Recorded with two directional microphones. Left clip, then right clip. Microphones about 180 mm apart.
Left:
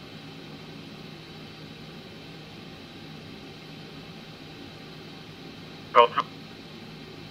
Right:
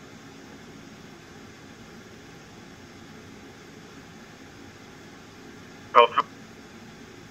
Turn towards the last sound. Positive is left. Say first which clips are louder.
# right 1 dB
turn(degrees=-20)  # may be behind; listen again after turning